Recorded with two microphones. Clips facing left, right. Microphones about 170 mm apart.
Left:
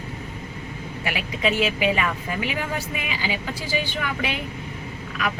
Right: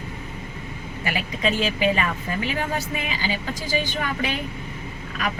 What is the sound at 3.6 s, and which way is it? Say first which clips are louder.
Speech: right 2 dB; 45° right (ahead or behind).